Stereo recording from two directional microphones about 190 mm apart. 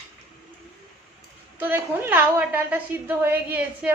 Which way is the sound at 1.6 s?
10° right (ahead or behind).